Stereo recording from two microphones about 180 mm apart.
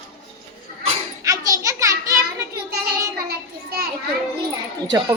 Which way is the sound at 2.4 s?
20° right (ahead or behind).